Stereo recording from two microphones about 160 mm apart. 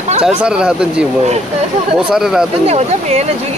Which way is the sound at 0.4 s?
5° right (ahead or behind).